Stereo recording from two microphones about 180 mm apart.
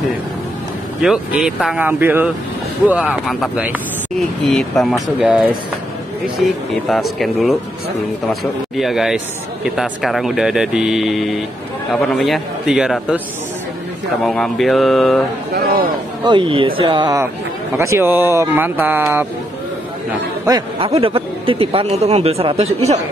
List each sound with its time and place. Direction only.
1.0 s a man's voice: centre (ahead or behind)
6.4 s a man's voice: centre (ahead or behind)
14.2 s a man's voice: centre (ahead or behind)
15.5 s a man's voice: 55° right (ahead or behind)
16.3 s speech: 30° right (ahead or behind); by 19.2 s 10° right (ahead or behind)
20.4 s speech: 20° right (ahead or behind); by 23.0 s 35° right (ahead or behind)